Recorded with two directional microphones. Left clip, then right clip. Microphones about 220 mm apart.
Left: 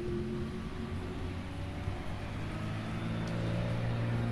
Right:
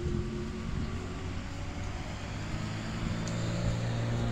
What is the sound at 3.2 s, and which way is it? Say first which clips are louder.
Vehicle: even; 45° right (ahead or behind).